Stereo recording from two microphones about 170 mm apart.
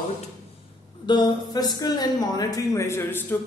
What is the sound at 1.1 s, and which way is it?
Speech, 25° left (ahead or behind).